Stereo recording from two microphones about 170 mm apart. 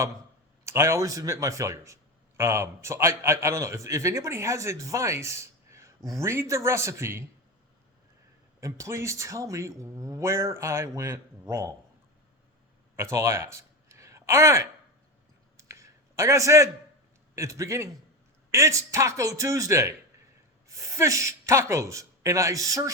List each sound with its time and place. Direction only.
0.6 s a man's voice: 15° right (ahead or behind)
8.6 s a man's voice: 15° right (ahead or behind)
13.0 s speech: 15° right (ahead or behind)
15.5 s a sound: 15° right (ahead or behind)
17.3 s a man's voice: 20° right (ahead or behind)